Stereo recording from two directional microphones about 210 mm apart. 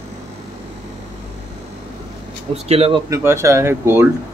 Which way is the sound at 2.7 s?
30° right (ahead or behind).